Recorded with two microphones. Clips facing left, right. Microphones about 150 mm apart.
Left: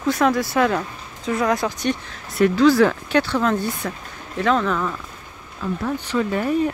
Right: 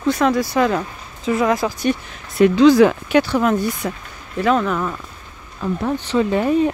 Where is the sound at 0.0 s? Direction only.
Centre (ahead or behind).